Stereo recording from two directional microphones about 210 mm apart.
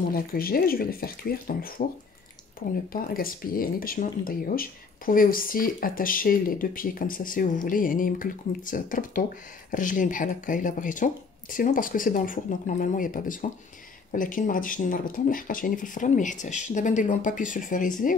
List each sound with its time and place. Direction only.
0.1 s speech: 45° left (ahead or behind)
2.9 s speech: 45° left (ahead or behind)